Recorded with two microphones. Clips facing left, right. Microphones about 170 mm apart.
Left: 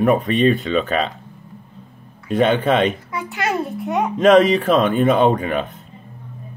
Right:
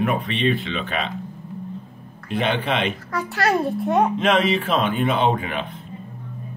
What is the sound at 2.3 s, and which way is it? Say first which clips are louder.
Speech: left 7 dB; 45° left (ahead or behind).